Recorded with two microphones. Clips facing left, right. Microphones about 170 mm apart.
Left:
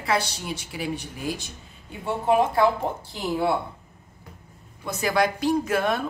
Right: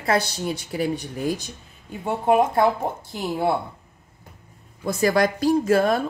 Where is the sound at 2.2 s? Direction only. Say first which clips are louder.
Right 2 dB; 50° right (ahead or behind).